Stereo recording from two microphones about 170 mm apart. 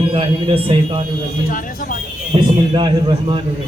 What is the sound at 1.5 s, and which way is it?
Speech, 55° left (ahead or behind).